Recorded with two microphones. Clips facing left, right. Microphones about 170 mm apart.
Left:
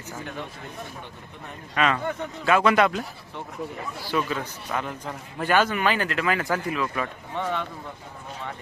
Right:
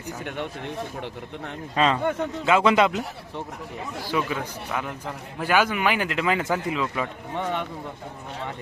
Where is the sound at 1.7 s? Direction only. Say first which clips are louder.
Right 2 dB; 30° right (ahead or behind).